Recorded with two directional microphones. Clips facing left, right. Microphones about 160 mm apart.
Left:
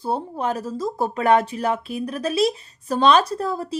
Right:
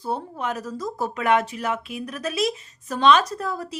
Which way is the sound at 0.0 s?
30° left (ahead or behind).